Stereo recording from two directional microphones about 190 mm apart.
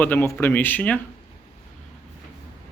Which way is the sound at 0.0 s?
10° left (ahead or behind).